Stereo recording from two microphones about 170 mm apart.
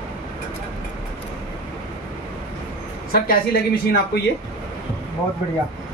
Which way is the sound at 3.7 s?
65° left (ahead or behind).